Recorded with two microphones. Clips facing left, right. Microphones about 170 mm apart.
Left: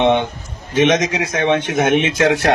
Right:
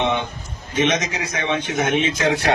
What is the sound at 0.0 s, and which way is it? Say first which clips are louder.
Speech: left 7 dB; 60° left (ahead or behind).